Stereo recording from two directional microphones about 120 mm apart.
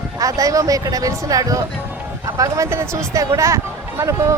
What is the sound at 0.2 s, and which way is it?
Speech, 30° right (ahead or behind).